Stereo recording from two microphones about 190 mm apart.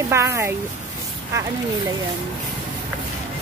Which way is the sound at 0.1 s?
15° right (ahead or behind).